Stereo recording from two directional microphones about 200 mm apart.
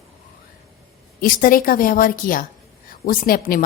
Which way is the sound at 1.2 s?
45° left (ahead or behind).